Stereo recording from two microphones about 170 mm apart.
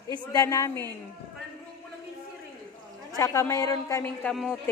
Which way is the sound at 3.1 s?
15° left (ahead or behind).